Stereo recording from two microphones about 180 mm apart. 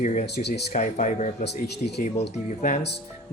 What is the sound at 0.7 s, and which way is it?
Speech, 40° left (ahead or behind).